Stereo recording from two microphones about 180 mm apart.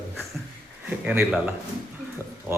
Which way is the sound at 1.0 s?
5° right (ahead or behind).